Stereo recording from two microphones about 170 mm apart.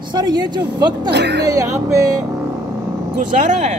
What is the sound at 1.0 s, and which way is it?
Speech, 85° right.